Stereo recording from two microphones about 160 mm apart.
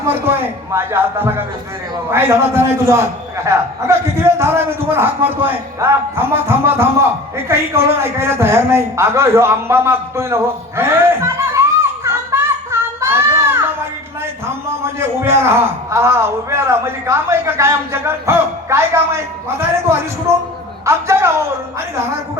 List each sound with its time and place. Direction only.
0.1 s a man's voice: 15° right (ahead or behind)
11.5 s music: 15° right (ahead or behind)
15.2 s a man's voice: 15° right (ahead or behind)